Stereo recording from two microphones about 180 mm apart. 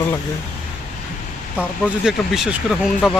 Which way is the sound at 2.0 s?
Centre (ahead or behind).